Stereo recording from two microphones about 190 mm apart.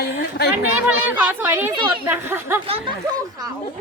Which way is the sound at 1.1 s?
10° right (ahead or behind).